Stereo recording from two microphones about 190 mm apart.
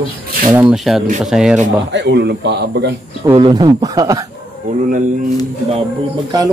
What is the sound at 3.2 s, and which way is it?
Speech, 25° right (ahead or behind).